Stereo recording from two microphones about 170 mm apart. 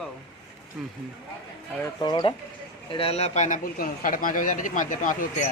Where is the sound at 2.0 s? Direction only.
25° left (ahead or behind); by 5.3 s 50° left (ahead or behind).